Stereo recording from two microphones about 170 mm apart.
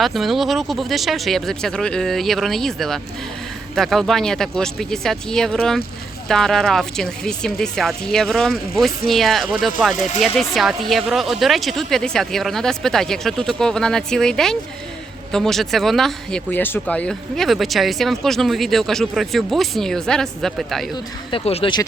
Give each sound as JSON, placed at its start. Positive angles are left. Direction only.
{"t": 0.0, "sound": "speech", "side_deg": 0}
{"t": 20.9, "sound": "speech", "side_deg": 30}